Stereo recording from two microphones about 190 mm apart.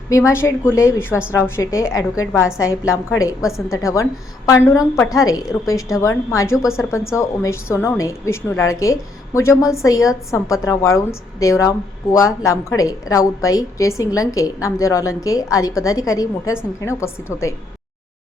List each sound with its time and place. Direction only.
0.1 s a woman's voice: 15° left (ahead or behind)